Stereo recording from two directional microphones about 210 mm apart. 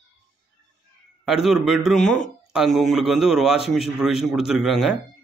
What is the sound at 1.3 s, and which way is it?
Speech, centre (ahead or behind).